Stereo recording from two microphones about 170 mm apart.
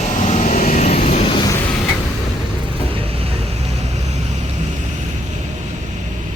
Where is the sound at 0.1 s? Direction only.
45° left (ahead or behind).